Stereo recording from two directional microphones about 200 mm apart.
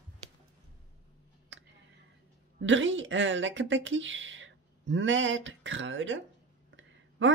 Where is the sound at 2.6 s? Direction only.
70° right (ahead or behind).